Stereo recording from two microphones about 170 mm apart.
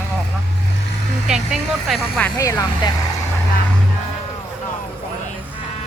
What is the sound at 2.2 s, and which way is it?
Speech, 20° left (ahead or behind).